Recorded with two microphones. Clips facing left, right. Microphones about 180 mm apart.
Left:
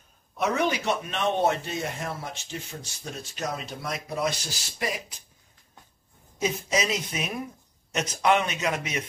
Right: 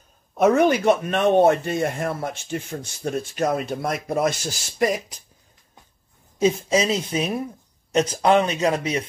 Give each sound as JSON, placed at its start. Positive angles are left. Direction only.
{"t": 0.3, "sound": "speech", "side_deg": -50}
{"t": 6.4, "sound": "speech", "side_deg": -30}